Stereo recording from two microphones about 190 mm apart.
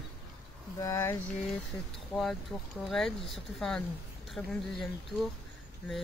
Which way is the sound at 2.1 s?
Centre (ahead or behind).